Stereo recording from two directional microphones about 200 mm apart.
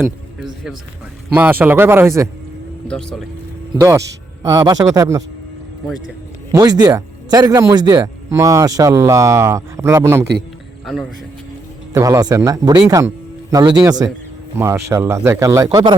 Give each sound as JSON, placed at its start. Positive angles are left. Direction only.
{"t": 0.0, "sound": "a sound", "side_deg": 0}
{"t": 1.3, "sound": "a man's voice", "side_deg": -10}
{"t": 2.8, "sound": "speech", "side_deg": 5}
{"t": 3.8, "sound": "a man's voice", "side_deg": -15}
{"t": 6.5, "sound": "a man's voice", "side_deg": -20}
{"t": 10.8, "sound": "speech", "side_deg": 0}
{"t": 11.9, "sound": "a man's voice", "side_deg": -15}